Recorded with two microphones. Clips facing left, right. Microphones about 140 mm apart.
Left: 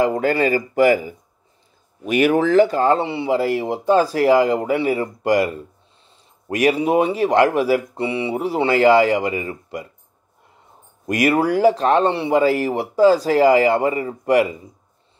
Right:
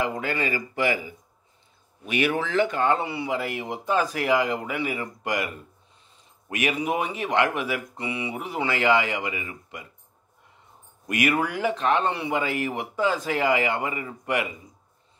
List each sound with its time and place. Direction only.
0.0 s speech: 40° left (ahead or behind)
11.1 s speech: 35° left (ahead or behind)